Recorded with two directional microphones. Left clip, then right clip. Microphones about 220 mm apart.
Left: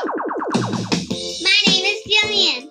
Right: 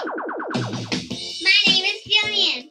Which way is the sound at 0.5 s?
40° left (ahead or behind).